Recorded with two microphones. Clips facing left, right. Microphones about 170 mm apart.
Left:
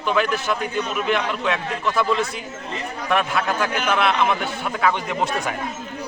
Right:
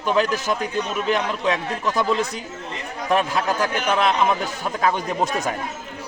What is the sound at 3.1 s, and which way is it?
A man's voice, 35° right (ahead or behind).